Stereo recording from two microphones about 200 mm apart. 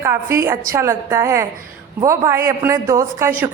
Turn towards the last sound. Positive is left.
turn(degrees=-10)  # may be behind; listen again after turning